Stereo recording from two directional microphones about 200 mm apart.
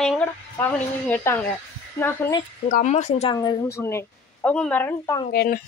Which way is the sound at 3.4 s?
20° left (ahead or behind).